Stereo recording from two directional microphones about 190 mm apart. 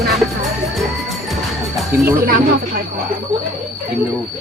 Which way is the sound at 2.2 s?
50° right (ahead or behind).